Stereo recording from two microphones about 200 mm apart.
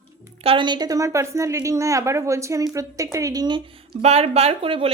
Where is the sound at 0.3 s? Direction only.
25° right (ahead or behind).